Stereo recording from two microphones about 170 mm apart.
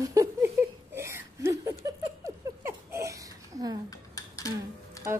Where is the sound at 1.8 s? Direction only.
15° right (ahead or behind).